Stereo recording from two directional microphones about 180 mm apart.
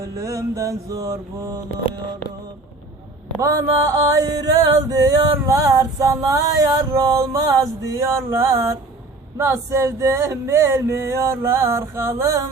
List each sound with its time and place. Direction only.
0.0 s music: 20° right (ahead or behind)
3.4 s music: 20° right (ahead or behind)
9.4 s male singing: 15° right (ahead or behind)